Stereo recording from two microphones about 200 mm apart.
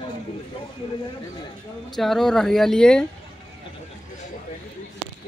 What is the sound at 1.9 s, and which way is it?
Speech, centre (ahead or behind).